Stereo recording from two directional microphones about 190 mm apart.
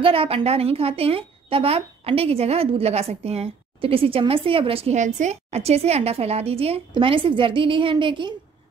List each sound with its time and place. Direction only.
0.0 s a woman's voice: 30° right (ahead or behind)